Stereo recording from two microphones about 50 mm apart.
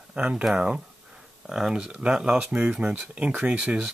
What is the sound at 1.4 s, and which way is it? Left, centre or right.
Speech, centre.